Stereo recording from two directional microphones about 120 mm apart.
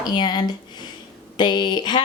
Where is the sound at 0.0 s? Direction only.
35° left (ahead or behind).